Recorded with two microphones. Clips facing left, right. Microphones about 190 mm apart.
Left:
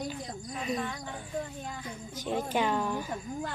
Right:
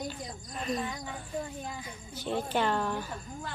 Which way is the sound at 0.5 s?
5° left (ahead or behind).